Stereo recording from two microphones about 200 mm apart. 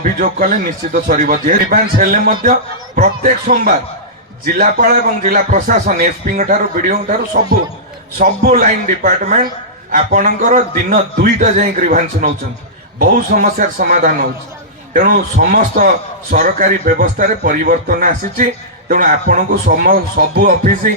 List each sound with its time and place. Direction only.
0.0 s a man's voice: 40° right (ahead or behind)
8.2 s a man's voice: 45° right (ahead or behind)